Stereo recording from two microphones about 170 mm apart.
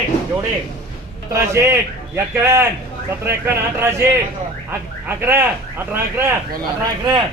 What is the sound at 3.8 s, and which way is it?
Speech, 15° right (ahead or behind).